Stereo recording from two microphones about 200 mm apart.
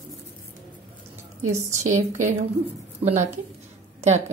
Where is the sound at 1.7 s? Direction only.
35° right (ahead or behind).